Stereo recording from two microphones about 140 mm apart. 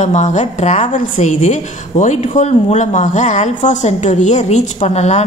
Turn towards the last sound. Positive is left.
turn(degrees=50)  # may be behind; listen again after turning